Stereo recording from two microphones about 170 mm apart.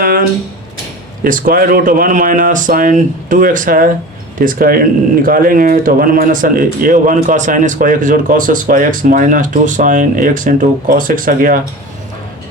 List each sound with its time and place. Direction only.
0.0 s speech: 55° right (ahead or behind)